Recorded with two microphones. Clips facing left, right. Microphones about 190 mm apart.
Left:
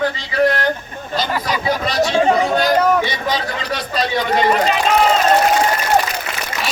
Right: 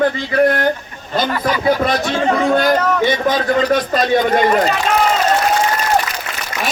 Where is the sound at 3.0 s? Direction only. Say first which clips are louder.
Right 6 dB; 50° right (ahead or behind).